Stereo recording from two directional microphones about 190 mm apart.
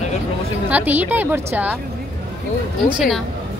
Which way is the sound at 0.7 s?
10° right (ahead or behind).